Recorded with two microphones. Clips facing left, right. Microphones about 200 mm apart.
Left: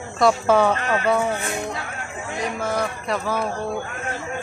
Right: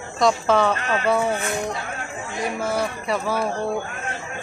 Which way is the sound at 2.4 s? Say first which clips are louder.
Right 1 dB; 10° right (ahead or behind).